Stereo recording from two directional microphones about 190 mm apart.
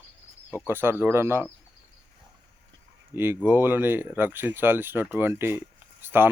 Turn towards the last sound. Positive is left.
turn(degrees=-10)  # may be behind; listen again after turning